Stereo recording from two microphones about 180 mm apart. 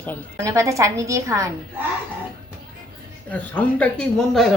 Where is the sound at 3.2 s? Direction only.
10° left (ahead or behind).